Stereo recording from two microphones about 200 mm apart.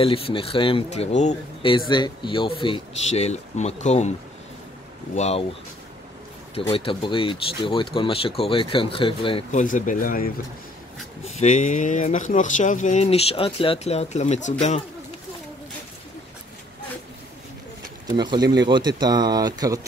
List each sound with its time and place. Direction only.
0.0 s speech: 25° left (ahead or behind)
5.1 s speech: 35° left (ahead or behind)
6.5 s speech: 30° left (ahead or behind)
9.5 s speech: 40° left (ahead or behind)
18.0 s speech: 20° right (ahead or behind)